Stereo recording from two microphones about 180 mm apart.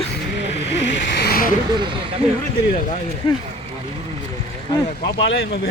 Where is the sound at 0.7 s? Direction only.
80° left; by 1.5 s 55° left (ahead or behind).